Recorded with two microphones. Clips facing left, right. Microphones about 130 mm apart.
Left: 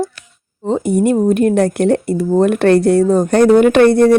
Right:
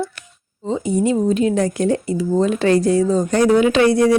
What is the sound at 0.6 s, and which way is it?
Speech, 60° left (ahead or behind).